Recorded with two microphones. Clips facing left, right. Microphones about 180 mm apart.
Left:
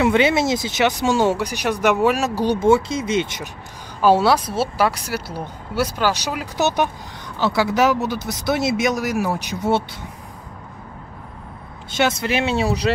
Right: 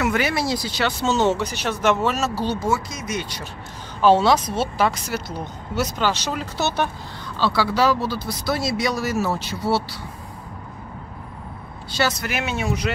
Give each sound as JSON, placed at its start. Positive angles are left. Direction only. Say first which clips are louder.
{"t": 0.0, "sound": "speech", "louder": "left 5 dB", "side_deg": 25}
{"t": 2.7, "sound": "speech", "louder": "left 8 dB", "side_deg": 30}
{"t": 4.0, "sound": "speech", "louder": "even", "side_deg": 10}
{"t": 11.9, "sound": "speech", "louder": "left 4 dB", "side_deg": 25}